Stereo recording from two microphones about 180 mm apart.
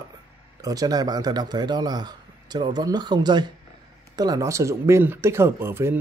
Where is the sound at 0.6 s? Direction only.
20° right (ahead or behind).